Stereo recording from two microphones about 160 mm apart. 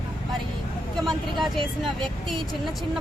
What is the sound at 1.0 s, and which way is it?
Speech, centre (ahead or behind).